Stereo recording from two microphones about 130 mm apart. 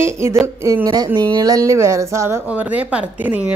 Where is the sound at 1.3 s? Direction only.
25° right (ahead or behind).